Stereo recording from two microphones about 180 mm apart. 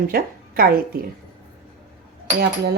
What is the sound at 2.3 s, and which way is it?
Speech, 65° right (ahead or behind).